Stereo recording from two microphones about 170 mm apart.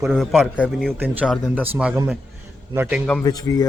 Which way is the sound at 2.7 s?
15° right (ahead or behind).